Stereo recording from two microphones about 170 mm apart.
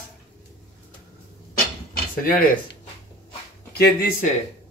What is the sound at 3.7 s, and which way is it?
Speech, 65° left (ahead or behind).